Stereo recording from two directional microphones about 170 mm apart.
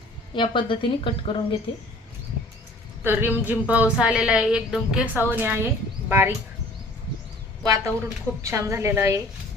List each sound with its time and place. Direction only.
0.3 s a woman's voice: 30° left (ahead or behind)
3.0 s a woman's voice: 10° right (ahead or behind)
7.6 s speech: 20° right (ahead or behind)